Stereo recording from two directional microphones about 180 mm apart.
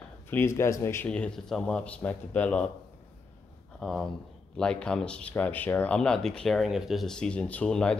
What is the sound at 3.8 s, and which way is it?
Speech, centre (ahead or behind).